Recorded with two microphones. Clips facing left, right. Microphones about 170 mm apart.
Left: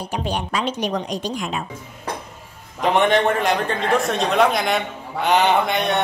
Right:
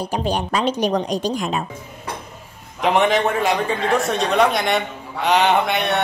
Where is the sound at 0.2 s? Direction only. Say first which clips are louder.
Right 3 dB; 40° right (ahead or behind).